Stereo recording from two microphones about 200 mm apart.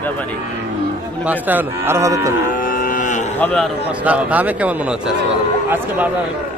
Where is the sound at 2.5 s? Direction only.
45° left (ahead or behind).